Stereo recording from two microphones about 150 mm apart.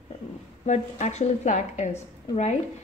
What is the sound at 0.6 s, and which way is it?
A woman's voice, 50° left (ahead or behind).